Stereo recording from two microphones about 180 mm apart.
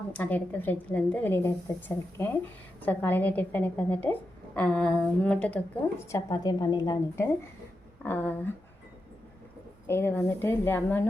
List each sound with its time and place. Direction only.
0.1 s a woman's voice: 10° left (ahead or behind)
8.0 s a woman's voice: 10° left (ahead or behind)
9.8 s a woman's voice: 10° left (ahead or behind)